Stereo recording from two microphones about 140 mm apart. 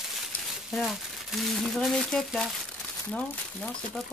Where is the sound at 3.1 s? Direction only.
10° left (ahead or behind).